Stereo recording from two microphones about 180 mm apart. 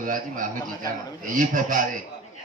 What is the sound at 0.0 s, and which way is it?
A man's voice, 50° right (ahead or behind).